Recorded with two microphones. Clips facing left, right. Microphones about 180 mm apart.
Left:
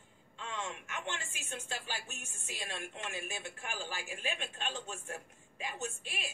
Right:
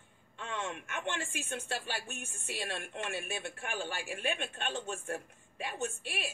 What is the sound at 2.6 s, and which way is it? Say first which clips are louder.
Speech: right 3 dB; 55° right (ahead or behind).